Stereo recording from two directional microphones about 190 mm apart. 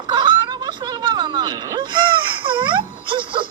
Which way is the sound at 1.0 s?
25° right (ahead or behind).